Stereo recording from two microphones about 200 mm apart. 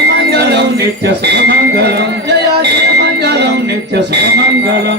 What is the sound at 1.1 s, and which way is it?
Speech, 55° right (ahead or behind).